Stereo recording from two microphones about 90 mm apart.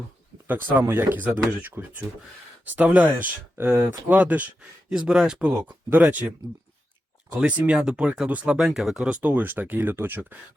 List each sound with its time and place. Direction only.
0.4 s speech: 20° right (ahead or behind); by 9.1 s 5° right (ahead or behind)
9.2 s speech: 20° right (ahead or behind)